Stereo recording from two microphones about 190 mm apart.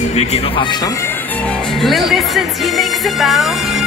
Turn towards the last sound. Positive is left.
turn(degrees=0)  # may be behind; listen again after turning